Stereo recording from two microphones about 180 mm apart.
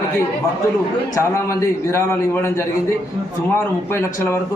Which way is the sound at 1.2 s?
15° left (ahead or behind).